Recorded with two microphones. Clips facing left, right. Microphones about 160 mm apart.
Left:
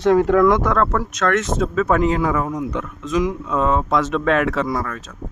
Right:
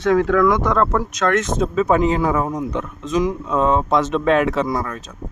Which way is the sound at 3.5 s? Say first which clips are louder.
Right 3 dB; 35° right (ahead or behind).